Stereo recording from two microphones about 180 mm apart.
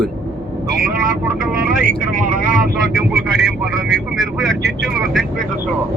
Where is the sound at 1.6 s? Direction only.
50° right (ahead or behind).